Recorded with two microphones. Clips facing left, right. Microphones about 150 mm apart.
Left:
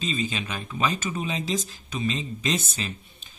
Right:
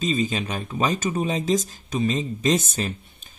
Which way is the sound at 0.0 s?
40° right (ahead or behind).